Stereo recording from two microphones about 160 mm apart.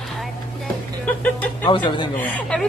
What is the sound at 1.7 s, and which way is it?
Speech, 30° left (ahead or behind).